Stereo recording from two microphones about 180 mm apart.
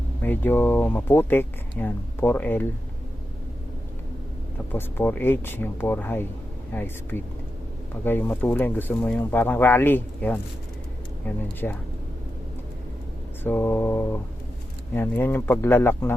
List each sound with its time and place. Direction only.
0.2 s speech: 10° left (ahead or behind)
4.7 s speech: 10° left (ahead or behind)
13.4 s speech: 10° left (ahead or behind)